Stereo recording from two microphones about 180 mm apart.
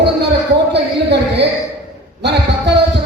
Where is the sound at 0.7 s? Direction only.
70° right (ahead or behind).